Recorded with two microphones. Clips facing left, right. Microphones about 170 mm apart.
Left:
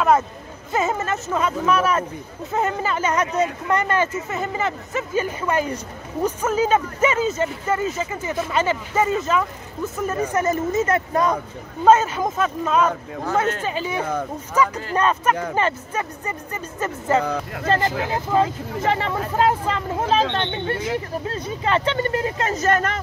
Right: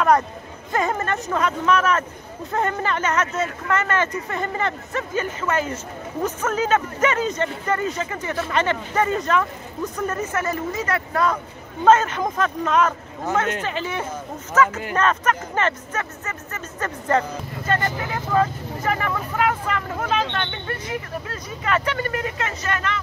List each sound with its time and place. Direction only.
0.7 s speech: 5° left (ahead or behind); by 11.3 s 20° left (ahead or behind)
11.8 s speech: 10° left (ahead or behind)
17.6 s speech: 30° left (ahead or behind); by 22.9 s 45° left (ahead or behind)